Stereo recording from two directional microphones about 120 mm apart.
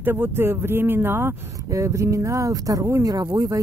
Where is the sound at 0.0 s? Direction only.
20° right (ahead or behind).